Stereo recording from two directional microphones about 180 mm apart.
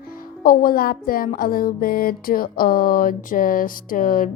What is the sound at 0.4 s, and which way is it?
A woman's voice, 50° left (ahead or behind).